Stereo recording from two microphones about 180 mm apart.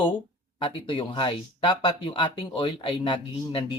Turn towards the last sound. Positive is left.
turn(degrees=25)  # may be behind; listen again after turning